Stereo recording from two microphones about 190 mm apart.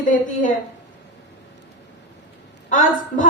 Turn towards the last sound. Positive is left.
turn(degrees=45)  # may be behind; listen again after turning